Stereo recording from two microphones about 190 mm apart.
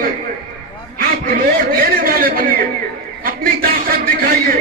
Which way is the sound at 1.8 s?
50° right (ahead or behind).